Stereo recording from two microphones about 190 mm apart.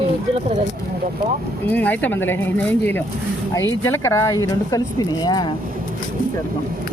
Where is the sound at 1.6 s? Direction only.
10° left (ahead or behind).